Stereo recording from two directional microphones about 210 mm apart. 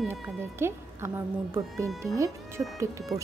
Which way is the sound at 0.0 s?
5° right (ahead or behind).